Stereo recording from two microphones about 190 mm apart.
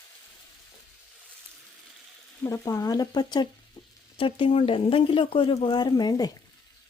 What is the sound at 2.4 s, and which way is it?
Speech, 15° left (ahead or behind).